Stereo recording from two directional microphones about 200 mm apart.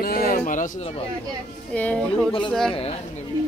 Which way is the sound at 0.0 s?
50° left (ahead or behind).